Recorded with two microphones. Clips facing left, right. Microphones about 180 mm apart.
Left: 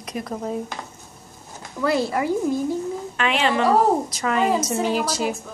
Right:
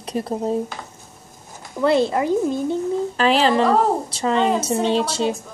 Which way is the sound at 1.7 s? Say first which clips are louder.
Right 4 dB; 25° right (ahead or behind).